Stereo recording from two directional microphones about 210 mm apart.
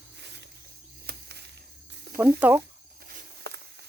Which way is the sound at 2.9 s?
45° right (ahead or behind).